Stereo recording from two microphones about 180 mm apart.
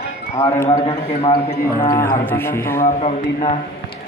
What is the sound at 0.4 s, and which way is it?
Speech, 15° left (ahead or behind).